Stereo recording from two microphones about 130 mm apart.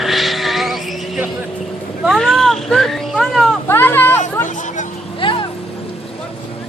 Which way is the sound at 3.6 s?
15° left (ahead or behind).